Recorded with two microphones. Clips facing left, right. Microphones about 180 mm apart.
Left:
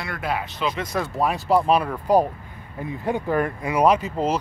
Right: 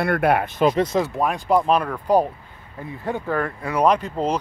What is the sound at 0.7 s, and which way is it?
Speech, 30° right (ahead or behind).